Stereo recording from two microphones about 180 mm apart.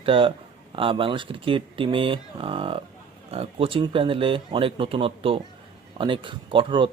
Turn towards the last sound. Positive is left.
turn(degrees=-30)  # may be behind; listen again after turning